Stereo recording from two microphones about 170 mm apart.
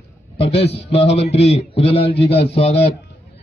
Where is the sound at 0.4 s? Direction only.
35° left (ahead or behind).